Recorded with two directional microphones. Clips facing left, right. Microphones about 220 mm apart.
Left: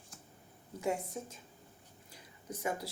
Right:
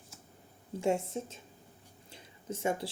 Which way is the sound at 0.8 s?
25° right (ahead or behind).